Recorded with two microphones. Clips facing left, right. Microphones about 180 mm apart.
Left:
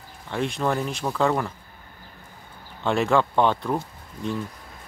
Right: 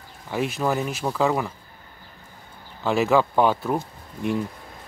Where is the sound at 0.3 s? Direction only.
5° right (ahead or behind).